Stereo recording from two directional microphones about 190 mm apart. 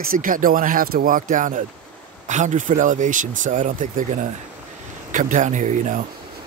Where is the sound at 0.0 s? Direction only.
45° right (ahead or behind).